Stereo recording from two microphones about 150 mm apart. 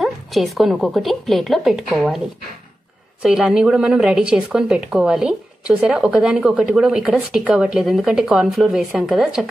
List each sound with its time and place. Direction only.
0.0 s a woman's voice: centre (ahead or behind)